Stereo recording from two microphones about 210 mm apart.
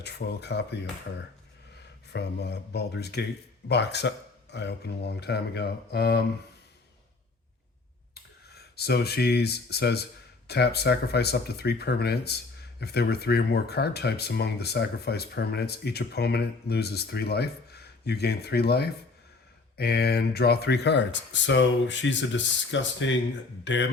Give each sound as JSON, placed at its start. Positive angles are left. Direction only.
{"t": 0.0, "sound": "speech", "side_deg": 55}
{"t": 2.0, "sound": "speech", "side_deg": 55}
{"t": 8.1, "sound": "speech", "side_deg": 50}